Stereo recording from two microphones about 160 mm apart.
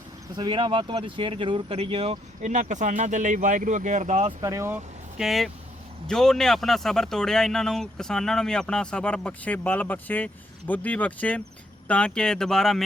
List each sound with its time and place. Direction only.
0.3 s speech: 30° right (ahead or behind)
2.4 s speech: 50° right (ahead or behind)
4.3 s speech: 20° right (ahead or behind)
5.1 s speech: centre (ahead or behind)